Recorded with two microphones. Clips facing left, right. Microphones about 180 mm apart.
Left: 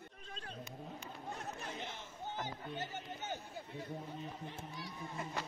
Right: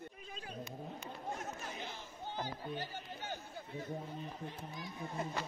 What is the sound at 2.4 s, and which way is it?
Speech, 20° left (ahead or behind).